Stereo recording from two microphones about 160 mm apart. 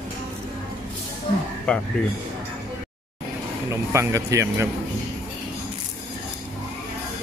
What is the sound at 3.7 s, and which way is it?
A man's voice, 15° right (ahead or behind).